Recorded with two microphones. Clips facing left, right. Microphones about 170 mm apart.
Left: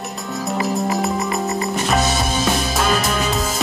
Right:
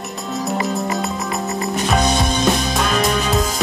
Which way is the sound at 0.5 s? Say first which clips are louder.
Left 2 dB; centre (ahead or behind).